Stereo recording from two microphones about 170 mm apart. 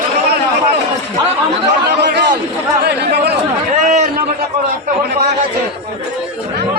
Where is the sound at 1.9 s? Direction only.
80° right.